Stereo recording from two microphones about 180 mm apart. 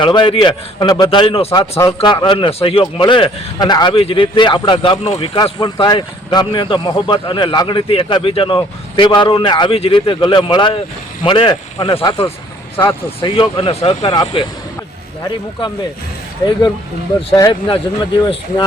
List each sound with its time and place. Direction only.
0.0 s a man's voice: 25° left (ahead or behind)
17.2 s a man's voice: 25° left (ahead or behind)